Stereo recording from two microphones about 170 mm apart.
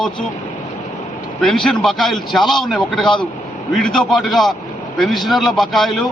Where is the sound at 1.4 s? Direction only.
Centre (ahead or behind).